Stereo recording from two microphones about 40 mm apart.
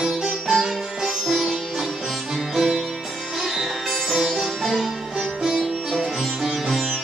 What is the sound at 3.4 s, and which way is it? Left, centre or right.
Sitar, centre.